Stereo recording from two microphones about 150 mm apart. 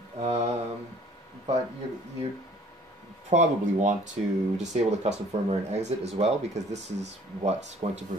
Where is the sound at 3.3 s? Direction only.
50° right (ahead or behind).